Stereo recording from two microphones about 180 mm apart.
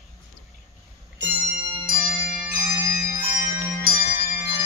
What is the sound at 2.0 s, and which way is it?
Tubular bells, 10° right (ahead or behind).